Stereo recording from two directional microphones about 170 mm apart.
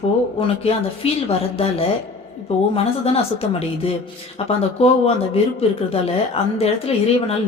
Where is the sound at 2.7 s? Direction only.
35° left (ahead or behind).